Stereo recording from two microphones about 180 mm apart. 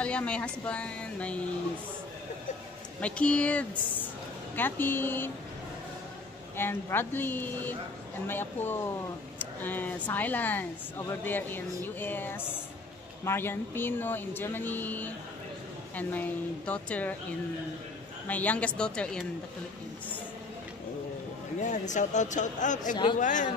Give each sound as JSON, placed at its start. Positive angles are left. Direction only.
{"t": 0.0, "sound": "speech", "side_deg": 5}
{"t": 3.0, "sound": "speech", "side_deg": 5}
{"t": 6.5, "sound": "speech", "side_deg": 15}
{"t": 18.3, "sound": "speech", "side_deg": 10}
{"t": 21.5, "sound": "speech", "side_deg": 45}